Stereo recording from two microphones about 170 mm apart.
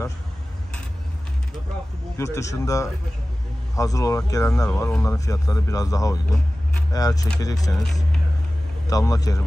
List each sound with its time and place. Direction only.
2.1 s speech: 15° left (ahead or behind)
7.7 s speech: centre (ahead or behind)
8.8 s speech: 20° left (ahead or behind)